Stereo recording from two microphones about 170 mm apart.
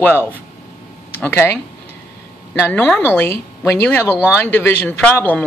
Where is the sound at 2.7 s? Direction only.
10° left (ahead or behind).